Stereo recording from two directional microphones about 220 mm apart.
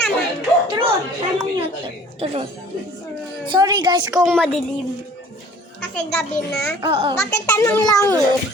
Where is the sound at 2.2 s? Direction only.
25° right (ahead or behind).